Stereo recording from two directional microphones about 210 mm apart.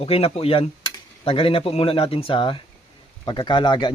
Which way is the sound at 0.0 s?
25° left (ahead or behind).